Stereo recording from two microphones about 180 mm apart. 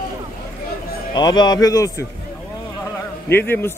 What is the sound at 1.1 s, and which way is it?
Speech, 25° left (ahead or behind).